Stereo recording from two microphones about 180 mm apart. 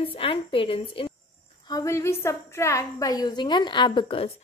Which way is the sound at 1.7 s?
15° left (ahead or behind).